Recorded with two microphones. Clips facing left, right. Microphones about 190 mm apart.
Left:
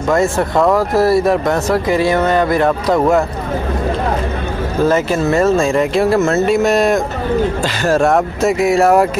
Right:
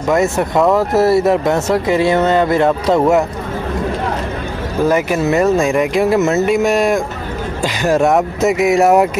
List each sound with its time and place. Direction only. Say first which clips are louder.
0.1 s speech: even; 20° right (ahead or behind)
4.8 s speech: even; 15° right (ahead or behind)